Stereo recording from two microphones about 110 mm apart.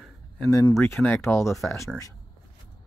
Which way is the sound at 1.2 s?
25° left (ahead or behind).